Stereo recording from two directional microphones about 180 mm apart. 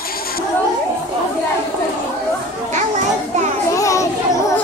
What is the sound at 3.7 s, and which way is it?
Children playing, 15° left (ahead or behind).